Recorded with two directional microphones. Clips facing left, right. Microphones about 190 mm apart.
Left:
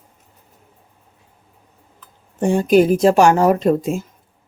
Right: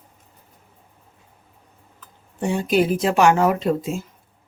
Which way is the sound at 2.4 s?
50° left (ahead or behind).